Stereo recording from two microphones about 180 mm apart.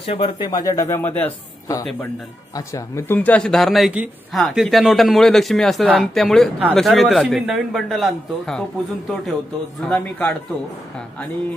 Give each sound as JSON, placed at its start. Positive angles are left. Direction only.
{"t": 0.0, "sound": "a man's voice", "side_deg": 25}
{"t": 9.8, "sound": "speech", "side_deg": 5}